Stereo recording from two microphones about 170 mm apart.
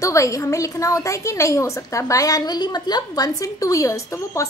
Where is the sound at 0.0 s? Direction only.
20° left (ahead or behind).